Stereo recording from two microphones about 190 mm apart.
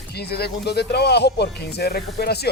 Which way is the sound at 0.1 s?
55° left (ahead or behind).